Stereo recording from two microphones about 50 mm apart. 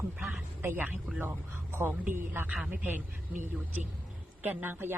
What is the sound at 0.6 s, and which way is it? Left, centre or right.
Speech, right.